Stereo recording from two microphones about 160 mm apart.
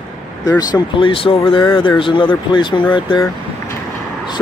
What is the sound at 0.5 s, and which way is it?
Speech, 25° left (ahead or behind).